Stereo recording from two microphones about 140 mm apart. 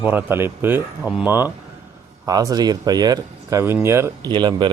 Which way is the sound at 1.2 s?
15° right (ahead or behind).